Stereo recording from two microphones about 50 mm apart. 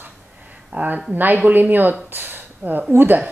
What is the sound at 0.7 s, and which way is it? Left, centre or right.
Speech, right.